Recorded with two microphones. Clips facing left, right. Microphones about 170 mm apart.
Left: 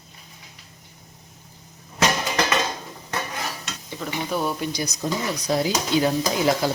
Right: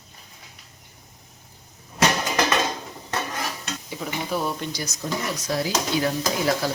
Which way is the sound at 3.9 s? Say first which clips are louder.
Left 1 dB; 5° right (ahead or behind).